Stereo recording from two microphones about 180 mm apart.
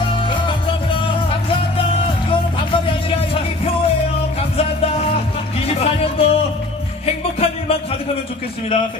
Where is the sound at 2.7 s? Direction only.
30° left (ahead or behind).